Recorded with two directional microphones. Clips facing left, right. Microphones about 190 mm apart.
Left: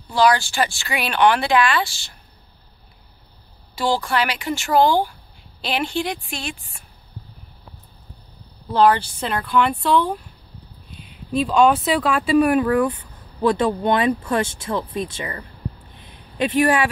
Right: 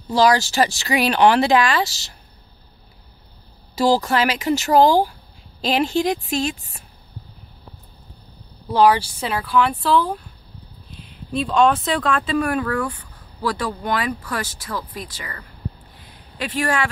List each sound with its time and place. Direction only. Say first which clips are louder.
0.1 s speech: right 1 dB; 40° right (ahead or behind)
3.7 s speech: right 4 dB; 40° right (ahead or behind)
8.7 s speech: right 1 dB; 10° right (ahead or behind); by 15.4 s 25° left (ahead or behind)
16.0 s a sound: left 7 dB; 20° left (ahead or behind)